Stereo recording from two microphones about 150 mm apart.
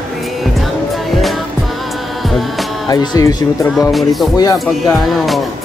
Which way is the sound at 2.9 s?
25° left (ahead or behind).